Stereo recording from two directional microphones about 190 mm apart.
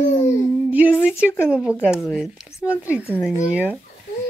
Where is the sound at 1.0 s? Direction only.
5° right (ahead or behind).